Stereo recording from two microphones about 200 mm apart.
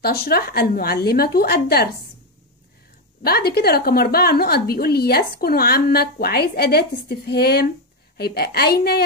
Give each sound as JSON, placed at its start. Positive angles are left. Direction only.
{"t": 0.0, "sound": "a woman's voice", "side_deg": 50}
{"t": 3.3, "sound": "a woman's voice", "side_deg": 50}